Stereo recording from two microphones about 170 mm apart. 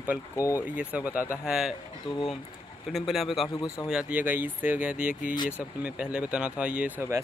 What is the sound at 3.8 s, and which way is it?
Speech, 5° right (ahead or behind).